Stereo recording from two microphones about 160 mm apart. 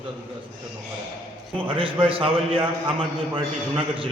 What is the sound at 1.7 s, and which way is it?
A man's voice, 35° right (ahead or behind).